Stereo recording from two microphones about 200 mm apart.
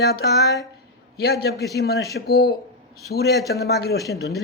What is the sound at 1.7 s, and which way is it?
Speech, 55° left (ahead or behind).